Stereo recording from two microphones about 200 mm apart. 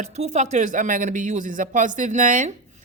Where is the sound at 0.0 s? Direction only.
35° right (ahead or behind).